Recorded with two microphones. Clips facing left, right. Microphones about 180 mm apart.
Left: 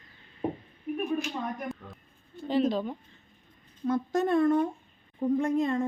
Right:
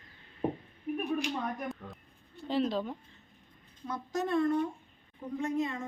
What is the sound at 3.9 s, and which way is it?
Speech, 55° left (ahead or behind).